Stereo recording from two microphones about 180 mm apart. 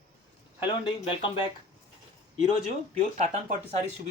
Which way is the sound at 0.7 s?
30° left (ahead or behind).